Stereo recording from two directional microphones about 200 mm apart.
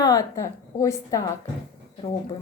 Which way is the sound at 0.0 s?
15° left (ahead or behind).